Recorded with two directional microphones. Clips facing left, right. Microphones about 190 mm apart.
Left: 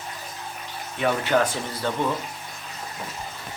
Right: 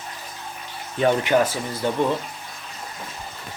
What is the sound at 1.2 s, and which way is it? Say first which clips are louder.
Speech: right 2 dB; 10° right (ahead or behind).